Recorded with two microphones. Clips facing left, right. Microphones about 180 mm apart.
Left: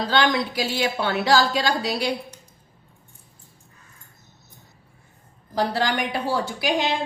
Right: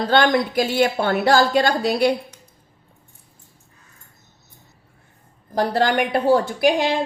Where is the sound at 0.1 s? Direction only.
50° right (ahead or behind).